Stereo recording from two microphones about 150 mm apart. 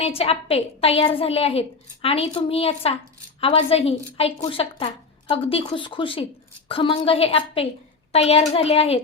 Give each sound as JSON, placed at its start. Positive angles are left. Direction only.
{"t": 0.0, "sound": "a woman's voice", "side_deg": 40}